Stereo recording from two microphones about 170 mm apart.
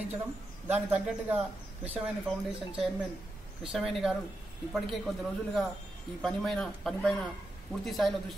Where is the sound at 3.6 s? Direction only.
Centre (ahead or behind).